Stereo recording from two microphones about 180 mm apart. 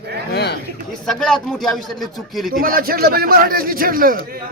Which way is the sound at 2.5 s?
55° right (ahead or behind).